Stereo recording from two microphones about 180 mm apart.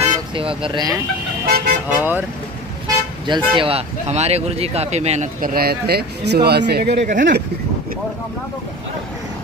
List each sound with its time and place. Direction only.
0.3 s speech: 30° right (ahead or behind)
1.4 s vehicle: 55° right (ahead or behind)
1.9 s speech: 10° right (ahead or behind)
3.3 s speech: 25° right (ahead or behind); by 7.1 s 65° right (ahead or behind)
7.1 s speech: 50° right (ahead or behind)